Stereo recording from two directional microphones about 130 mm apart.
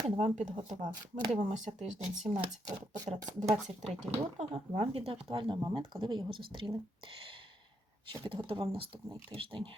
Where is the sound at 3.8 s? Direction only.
60° right (ahead or behind); by 6.7 s 40° right (ahead or behind).